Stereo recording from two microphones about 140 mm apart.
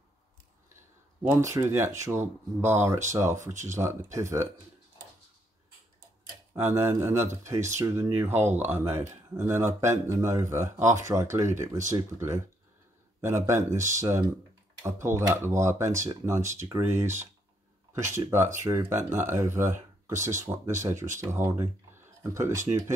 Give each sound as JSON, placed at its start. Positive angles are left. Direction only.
{"t": 1.2, "sound": "speech", "side_deg": -20}
{"t": 6.5, "sound": "speech", "side_deg": -20}
{"t": 20.1, "sound": "speech", "side_deg": -60}
{"t": 20.3, "sound": "speech", "side_deg": -20}
{"t": 20.9, "sound": "speech", "side_deg": -60}
{"t": 21.2, "sound": "speech", "side_deg": -20}